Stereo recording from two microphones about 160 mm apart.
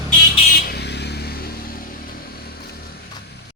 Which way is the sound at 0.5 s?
80° left.